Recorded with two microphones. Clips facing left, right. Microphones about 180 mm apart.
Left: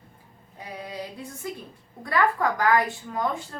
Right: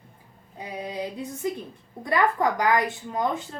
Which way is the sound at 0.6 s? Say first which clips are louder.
Right 4 dB; 20° right (ahead or behind).